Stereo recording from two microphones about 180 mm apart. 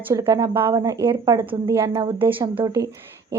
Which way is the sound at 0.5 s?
25° right (ahead or behind).